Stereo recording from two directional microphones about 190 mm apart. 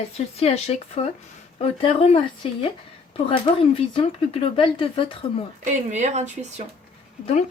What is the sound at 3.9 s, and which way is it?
Speech, 25° left (ahead or behind).